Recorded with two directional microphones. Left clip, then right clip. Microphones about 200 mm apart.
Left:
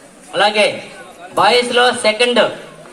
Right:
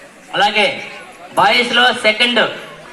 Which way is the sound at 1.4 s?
65° left (ahead or behind).